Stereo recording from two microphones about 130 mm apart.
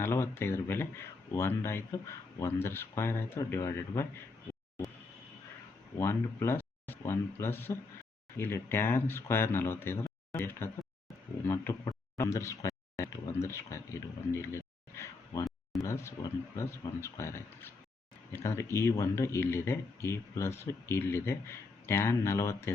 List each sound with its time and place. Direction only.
0.0 s speech: 20° left (ahead or behind)
6.0 s speech: 20° left (ahead or behind)